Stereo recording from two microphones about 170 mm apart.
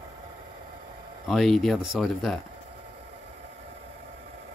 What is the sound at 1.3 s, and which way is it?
Speech, centre (ahead or behind).